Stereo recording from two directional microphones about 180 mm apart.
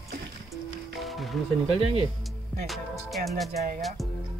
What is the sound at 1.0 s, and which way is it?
Music, centre (ahead or behind).